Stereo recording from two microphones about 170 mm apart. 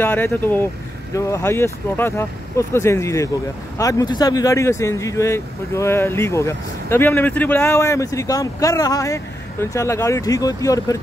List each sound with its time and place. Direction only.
0.0 s speech: 10° left (ahead or behind)